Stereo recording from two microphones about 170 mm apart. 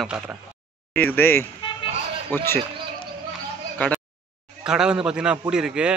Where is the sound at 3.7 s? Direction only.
10° left (ahead or behind).